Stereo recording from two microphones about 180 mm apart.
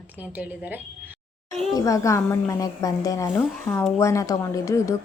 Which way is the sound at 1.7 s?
20° left (ahead or behind).